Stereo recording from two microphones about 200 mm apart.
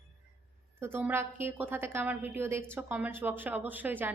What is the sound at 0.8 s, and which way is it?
A woman's voice, 10° right (ahead or behind).